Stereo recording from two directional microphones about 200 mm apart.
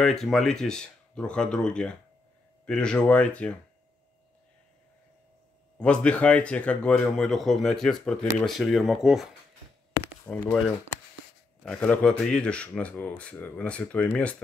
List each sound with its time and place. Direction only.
0.0 s speech: centre (ahead or behind)
5.8 s speech: 5° left (ahead or behind)
10.2 s speech: 10° left (ahead or behind)